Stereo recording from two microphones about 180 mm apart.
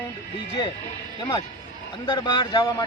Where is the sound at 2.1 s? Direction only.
25° left (ahead or behind).